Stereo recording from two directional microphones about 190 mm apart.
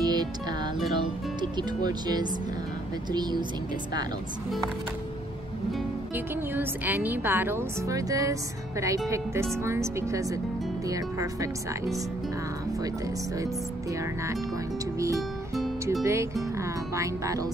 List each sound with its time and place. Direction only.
0.0 s music: 20° right (ahead or behind)
0.9 s speech: 25° right (ahead or behind)
5.7 s speech: 10° right (ahead or behind)
15.0 s speech: 15° right (ahead or behind)
15.8 s music: 15° right (ahead or behind)
16.5 s speech: 15° right (ahead or behind)